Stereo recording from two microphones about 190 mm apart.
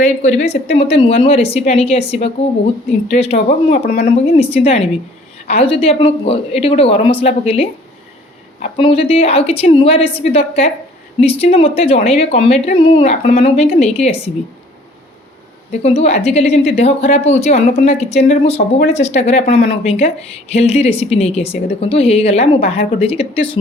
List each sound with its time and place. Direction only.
0.0 s a woman's voice: 40° left (ahead or behind)
4.0 s a woman's voice: 30° left (ahead or behind)
8.8 s a woman's voice: 30° left (ahead or behind)
15.8 s a woman's voice: 35° left (ahead or behind)